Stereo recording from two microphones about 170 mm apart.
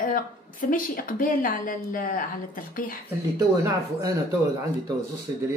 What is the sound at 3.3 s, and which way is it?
Speech, 20° right (ahead or behind).